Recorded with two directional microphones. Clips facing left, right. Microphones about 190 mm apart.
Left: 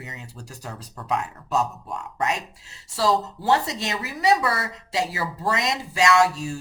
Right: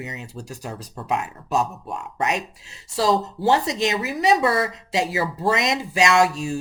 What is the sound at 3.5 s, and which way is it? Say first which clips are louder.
Speech: right 3 dB; 20° right (ahead or behind).